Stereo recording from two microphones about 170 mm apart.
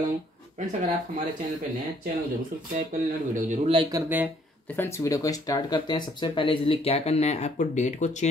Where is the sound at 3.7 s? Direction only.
25° right (ahead or behind).